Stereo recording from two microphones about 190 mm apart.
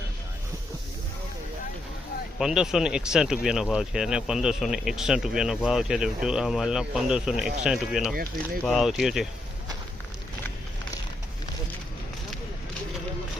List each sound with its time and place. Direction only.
2.4 s speech: 5° right (ahead or behind)